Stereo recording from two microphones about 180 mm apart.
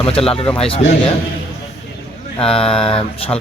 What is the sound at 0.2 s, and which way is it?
Speech, 35° left (ahead or behind).